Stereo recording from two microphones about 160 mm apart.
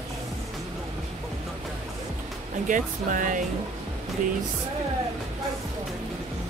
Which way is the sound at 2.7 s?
55° right (ahead or behind).